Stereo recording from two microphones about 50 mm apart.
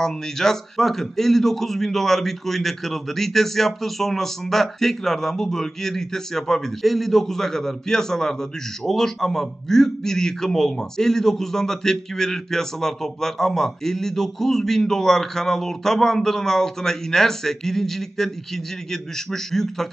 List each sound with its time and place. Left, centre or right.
0.0 s a man's voice: centre